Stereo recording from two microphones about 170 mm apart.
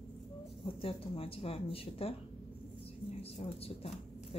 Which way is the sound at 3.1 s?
35° left (ahead or behind).